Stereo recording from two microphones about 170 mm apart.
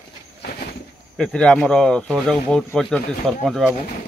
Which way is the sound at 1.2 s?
5° left (ahead or behind).